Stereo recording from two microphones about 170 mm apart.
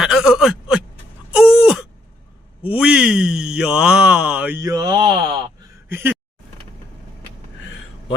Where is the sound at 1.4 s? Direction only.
5° right (ahead or behind).